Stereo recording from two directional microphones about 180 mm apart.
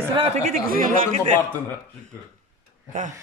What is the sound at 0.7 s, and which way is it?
Speech, 50° right (ahead or behind).